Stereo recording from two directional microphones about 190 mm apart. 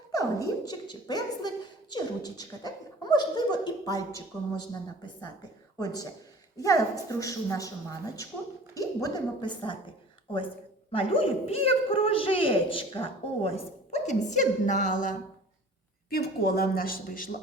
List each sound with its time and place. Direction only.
0.1 s speech: 20° left (ahead or behind)
5.8 s a woman's voice: 20° left (ahead or behind)
10.9 s a woman's voice: 30° left (ahead or behind)
16.0 s speech: 55° left (ahead or behind)